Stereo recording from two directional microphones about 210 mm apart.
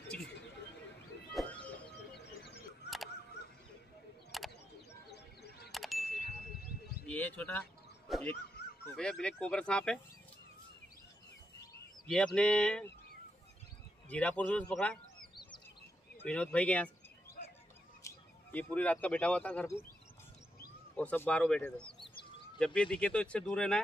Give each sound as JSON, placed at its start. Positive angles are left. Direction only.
{"t": 1.3, "sound": "music", "side_deg": 5}
{"t": 2.8, "sound": "a sound", "side_deg": 55}
{"t": 4.3, "sound": "a sound", "side_deg": 0}
{"t": 5.1, "sound": "music", "side_deg": 50}
{"t": 5.7, "sound": "ding", "side_deg": 0}
{"t": 7.1, "sound": "bird", "side_deg": 10}
{"t": 8.1, "sound": "speech", "side_deg": 5}
{"t": 12.4, "sound": "speech", "side_deg": 5}
{"t": 14.0, "sound": "speech", "side_deg": 5}
{"t": 16.3, "sound": "speech", "side_deg": 5}
{"t": 18.0, "sound": "speech", "side_deg": 10}
{"t": 20.9, "sound": "speech", "side_deg": 5}
{"t": 21.8, "sound": "bird", "side_deg": 25}
{"t": 22.8, "sound": "speech", "side_deg": 5}